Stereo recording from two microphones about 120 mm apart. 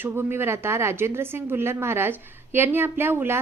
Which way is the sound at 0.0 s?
15° right (ahead or behind).